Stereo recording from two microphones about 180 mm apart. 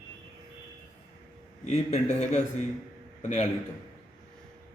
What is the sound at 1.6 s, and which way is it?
Speech, 35° left (ahead or behind).